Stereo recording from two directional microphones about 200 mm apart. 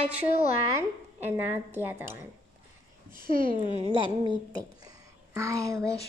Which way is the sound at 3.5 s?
25° left (ahead or behind).